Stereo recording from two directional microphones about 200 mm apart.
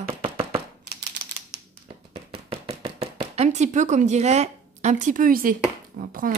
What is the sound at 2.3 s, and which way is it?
Chopping, 30° right (ahead or behind).